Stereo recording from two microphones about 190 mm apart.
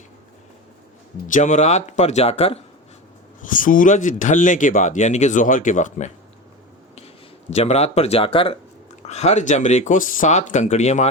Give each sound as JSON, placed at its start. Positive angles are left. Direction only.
{"t": 1.3, "sound": "speech", "side_deg": 40}
{"t": 3.4, "sound": "speech", "side_deg": 45}
{"t": 7.5, "sound": "speech", "side_deg": 35}